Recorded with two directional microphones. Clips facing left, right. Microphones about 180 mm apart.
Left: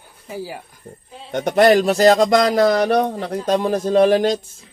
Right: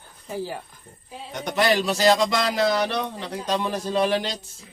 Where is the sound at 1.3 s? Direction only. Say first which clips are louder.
Left 9 dB; 50° left (ahead or behind).